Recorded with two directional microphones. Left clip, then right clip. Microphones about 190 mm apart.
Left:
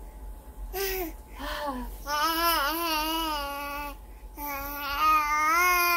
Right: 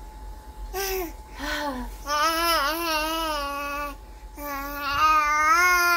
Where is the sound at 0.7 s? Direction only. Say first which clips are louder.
Right 3 dB; 10° left (ahead or behind).